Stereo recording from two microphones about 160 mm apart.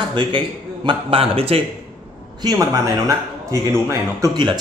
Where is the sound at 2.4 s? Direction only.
25° right (ahead or behind).